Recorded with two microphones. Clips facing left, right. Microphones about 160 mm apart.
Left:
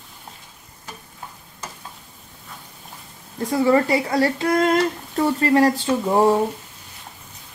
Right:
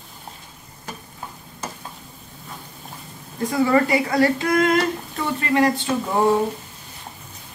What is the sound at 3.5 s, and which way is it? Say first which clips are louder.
Speech: left 1 dB; 25° left (ahead or behind).